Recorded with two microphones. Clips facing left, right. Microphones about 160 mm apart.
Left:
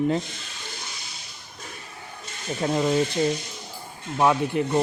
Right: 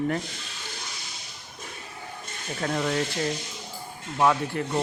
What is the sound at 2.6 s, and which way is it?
Speech, 20° left (ahead or behind).